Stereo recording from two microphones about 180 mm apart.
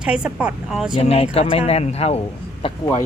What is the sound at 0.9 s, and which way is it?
Speech, 35° left (ahead or behind).